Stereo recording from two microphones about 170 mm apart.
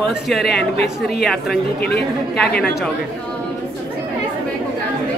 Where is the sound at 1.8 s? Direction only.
75° left (ahead or behind).